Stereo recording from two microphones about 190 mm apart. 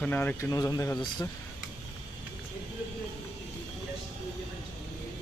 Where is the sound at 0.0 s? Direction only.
10° left (ahead or behind).